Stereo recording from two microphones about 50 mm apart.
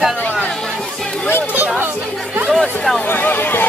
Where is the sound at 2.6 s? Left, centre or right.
Centre.